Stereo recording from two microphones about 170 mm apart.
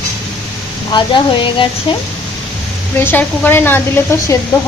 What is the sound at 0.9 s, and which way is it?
Speech, 30° left (ahead or behind).